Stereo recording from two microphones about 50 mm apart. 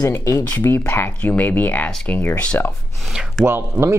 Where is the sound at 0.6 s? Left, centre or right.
Left.